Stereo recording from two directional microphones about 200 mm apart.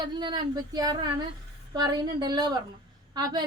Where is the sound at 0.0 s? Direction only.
20° right (ahead or behind).